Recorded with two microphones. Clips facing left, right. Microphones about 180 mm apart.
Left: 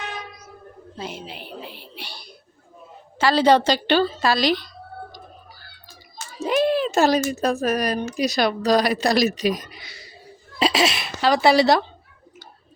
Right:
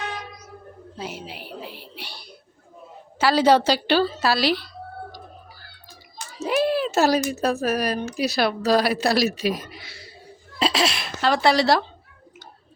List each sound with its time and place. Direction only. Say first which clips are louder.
0.9 s speech: left 1 dB; 10° right (ahead or behind)
6.4 s a sound: left 2 dB; 5° right (ahead or behind)
7.3 s speech: left 1 dB; centre (ahead or behind)